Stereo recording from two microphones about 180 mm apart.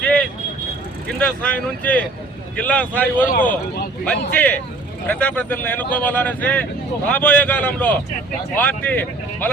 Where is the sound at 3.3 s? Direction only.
50° left (ahead or behind).